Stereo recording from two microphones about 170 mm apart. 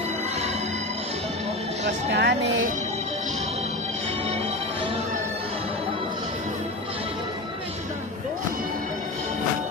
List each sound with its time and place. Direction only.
2.0 s speech: 90° right